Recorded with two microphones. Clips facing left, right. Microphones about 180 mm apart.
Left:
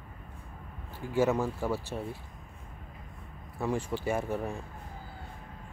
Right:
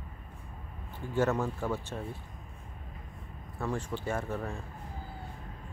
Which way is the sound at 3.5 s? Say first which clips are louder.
Left 3 dB; 10° left (ahead or behind).